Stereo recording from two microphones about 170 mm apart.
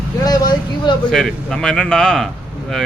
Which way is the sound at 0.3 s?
25° left (ahead or behind).